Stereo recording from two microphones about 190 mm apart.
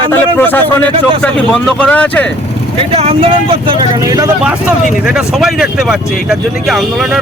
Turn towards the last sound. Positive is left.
turn(degrees=-5)  # may be behind; listen again after turning